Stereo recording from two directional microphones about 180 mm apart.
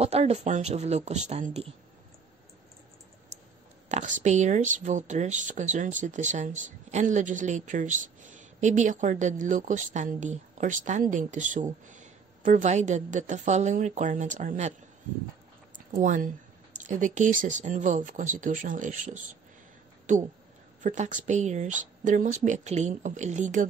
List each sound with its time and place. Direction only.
0.0 s speech: 35° right (ahead or behind)
3.9 s speech: 40° right (ahead or behind)
15.7 s a sound: 45° right (ahead or behind)
16.7 s speech: 45° right (ahead or behind)